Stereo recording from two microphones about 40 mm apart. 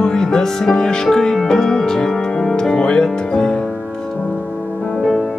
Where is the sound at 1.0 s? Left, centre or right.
Centre.